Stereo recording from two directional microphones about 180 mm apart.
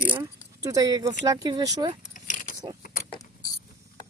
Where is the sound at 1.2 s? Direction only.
20° right (ahead or behind).